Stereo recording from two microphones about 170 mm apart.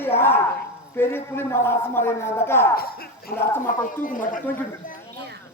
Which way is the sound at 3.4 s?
15° left (ahead or behind).